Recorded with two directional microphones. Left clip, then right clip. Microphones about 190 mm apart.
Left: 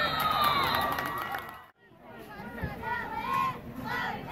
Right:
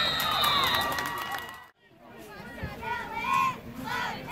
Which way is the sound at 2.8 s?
45° right (ahead or behind).